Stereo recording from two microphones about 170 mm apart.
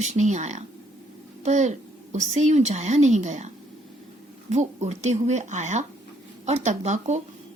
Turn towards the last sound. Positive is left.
turn(degrees=-45)  # may be behind; listen again after turning